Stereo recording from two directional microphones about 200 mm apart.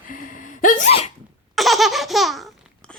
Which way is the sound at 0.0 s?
40° left (ahead or behind).